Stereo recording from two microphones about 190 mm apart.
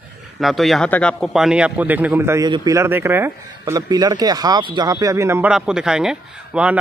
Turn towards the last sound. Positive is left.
turn(degrees=-5)  # may be behind; listen again after turning